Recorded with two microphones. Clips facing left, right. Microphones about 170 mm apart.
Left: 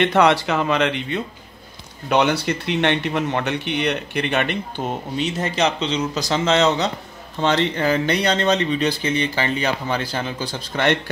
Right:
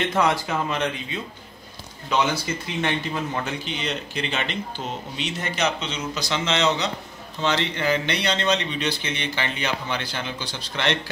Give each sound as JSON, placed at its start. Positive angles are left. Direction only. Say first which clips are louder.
{"t": 0.0, "sound": "speech", "louder": "left 6 dB", "side_deg": 70}
{"t": 5.4, "sound": "speech", "louder": "left 3 dB", "side_deg": 35}